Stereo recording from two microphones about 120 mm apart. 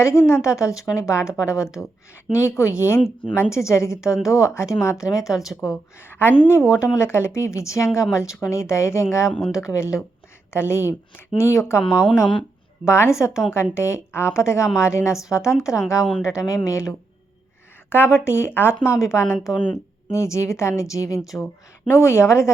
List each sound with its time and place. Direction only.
0.0 s a woman's voice: 25° left (ahead or behind)
5.4 s speech: centre (ahead or behind)
6.0 s a woman's voice: 20° left (ahead or behind)
12.8 s a woman's voice: 20° left (ahead or behind)
21.2 s speech: centre (ahead or behind)
21.8 s a woman's voice: 20° left (ahead or behind)